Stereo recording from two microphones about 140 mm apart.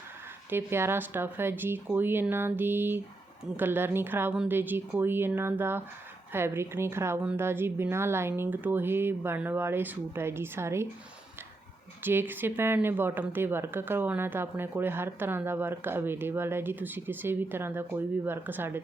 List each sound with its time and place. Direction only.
0.5 s speech: 15° right (ahead or behind)
12.0 s speech: 15° right (ahead or behind)